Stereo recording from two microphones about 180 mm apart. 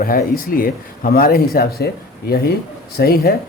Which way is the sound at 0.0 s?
55° left (ahead or behind).